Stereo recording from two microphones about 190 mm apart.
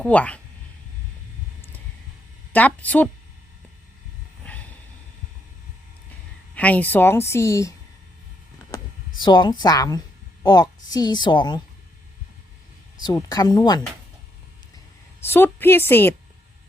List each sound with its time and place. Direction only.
0.0 s a woman's voice: 5° left (ahead or behind)
2.5 s a woman's voice: 10° left (ahead or behind)
4.4 s a sound: 5° left (ahead or behind)
6.5 s a woman's voice: 5° left (ahead or behind)
9.2 s a woman's voice: 25° left (ahead or behind)
13.0 s a woman's voice: 20° left (ahead or behind)
15.2 s a woman's voice: 10° left (ahead or behind)